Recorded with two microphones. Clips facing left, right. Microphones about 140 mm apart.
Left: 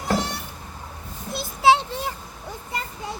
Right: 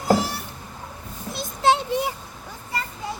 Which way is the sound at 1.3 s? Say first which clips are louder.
Left 2 dB; 5° left (ahead or behind).